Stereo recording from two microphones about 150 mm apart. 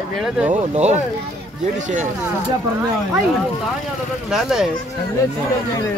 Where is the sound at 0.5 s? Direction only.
50° right (ahead or behind).